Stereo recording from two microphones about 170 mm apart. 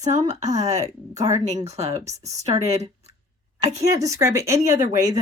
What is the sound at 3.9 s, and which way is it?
Speech, 20° right (ahead or behind).